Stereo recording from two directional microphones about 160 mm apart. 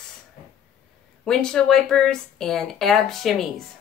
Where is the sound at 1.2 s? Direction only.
5° left (ahead or behind).